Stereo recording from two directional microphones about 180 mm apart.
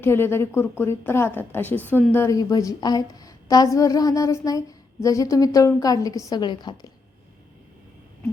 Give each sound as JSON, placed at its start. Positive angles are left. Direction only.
{"t": 0.0, "sound": "a woman's voice", "side_deg": 15}